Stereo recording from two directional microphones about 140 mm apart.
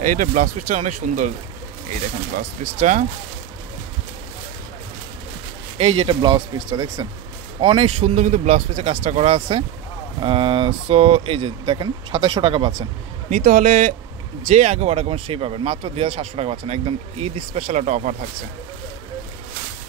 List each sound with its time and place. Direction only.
0.0 s speech: 70° right (ahead or behind)
2.3 s speech: 65° right (ahead or behind)
5.8 s speech: 40° right (ahead or behind)
8.0 s speech: 60° right (ahead or behind)
9.1 s speech: 40° right (ahead or behind)
13.3 s speech: 90° right; by 13.9 s 70° right (ahead or behind)
14.5 s speech: 55° right (ahead or behind)